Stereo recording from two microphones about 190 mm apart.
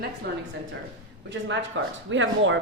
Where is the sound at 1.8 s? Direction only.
75° right (ahead or behind).